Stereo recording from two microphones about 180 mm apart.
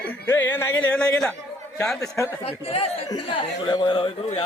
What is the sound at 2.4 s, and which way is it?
Speech, 30° left (ahead or behind).